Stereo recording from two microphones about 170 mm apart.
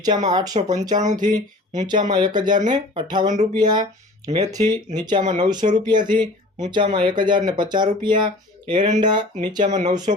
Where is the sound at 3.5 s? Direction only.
25° right (ahead or behind).